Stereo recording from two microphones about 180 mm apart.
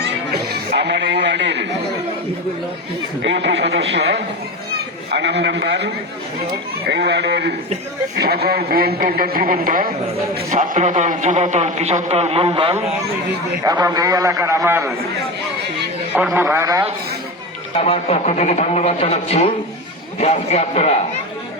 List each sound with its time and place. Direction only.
0.7 s a man's voice: 70° right (ahead or behind)
3.2 s a man's voice: 75° right (ahead or behind); by 14.8 s 15° right (ahead or behind)
16.1 s a man's voice: 10° right (ahead or behind)
17.7 s a man's voice: 35° left (ahead or behind)